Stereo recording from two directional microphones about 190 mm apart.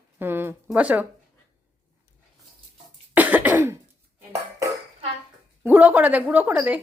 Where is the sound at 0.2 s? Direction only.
10° right (ahead or behind).